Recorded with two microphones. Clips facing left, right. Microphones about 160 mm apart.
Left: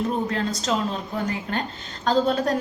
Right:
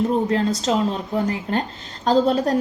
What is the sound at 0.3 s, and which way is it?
A woman's voice, 30° right (ahead or behind).